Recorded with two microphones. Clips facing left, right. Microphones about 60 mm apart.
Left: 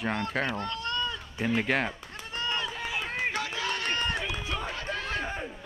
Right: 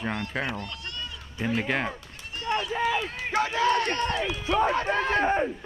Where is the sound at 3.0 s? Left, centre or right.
Left.